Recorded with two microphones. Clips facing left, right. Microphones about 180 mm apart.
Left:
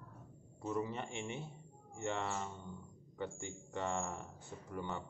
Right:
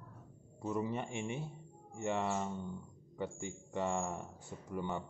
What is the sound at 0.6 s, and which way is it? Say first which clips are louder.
Speech: right 2 dB; 15° right (ahead or behind).